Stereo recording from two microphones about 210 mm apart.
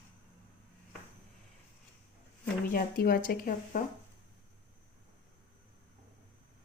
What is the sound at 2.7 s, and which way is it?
Speech, 45° left (ahead or behind).